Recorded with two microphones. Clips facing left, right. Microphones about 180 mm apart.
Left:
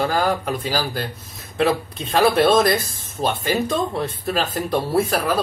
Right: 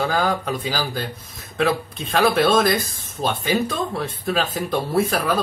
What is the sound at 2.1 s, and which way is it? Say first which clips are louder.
Speech: left 2 dB; 10° left (ahead or behind).